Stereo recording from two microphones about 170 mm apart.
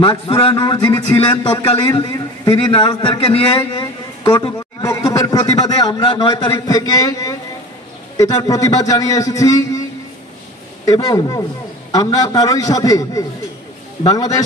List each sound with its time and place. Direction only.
0.4 s a man's voice: 30° left (ahead or behind)
10.9 s a man's voice: 20° left (ahead or behind)